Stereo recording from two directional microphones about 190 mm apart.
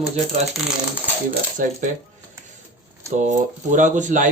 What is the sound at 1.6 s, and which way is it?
Speech, 45° right (ahead or behind).